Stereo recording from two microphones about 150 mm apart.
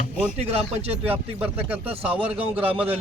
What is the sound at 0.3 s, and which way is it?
Speech, 40° right (ahead or behind).